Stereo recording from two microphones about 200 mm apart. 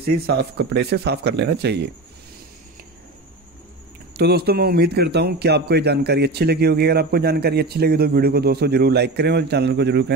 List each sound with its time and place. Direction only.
0.0 s speech: 50° right (ahead or behind)
4.2 s speech: 50° right (ahead or behind)